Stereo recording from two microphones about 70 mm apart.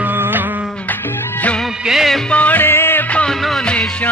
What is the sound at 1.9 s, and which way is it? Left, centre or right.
Music, centre.